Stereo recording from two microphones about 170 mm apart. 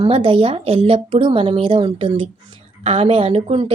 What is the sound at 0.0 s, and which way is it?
A woman's voice, 30° right (ahead or behind).